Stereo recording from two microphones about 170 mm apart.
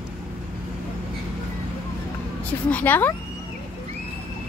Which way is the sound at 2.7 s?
10° left (ahead or behind).